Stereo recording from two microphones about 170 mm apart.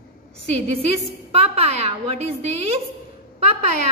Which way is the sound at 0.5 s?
35° right (ahead or behind).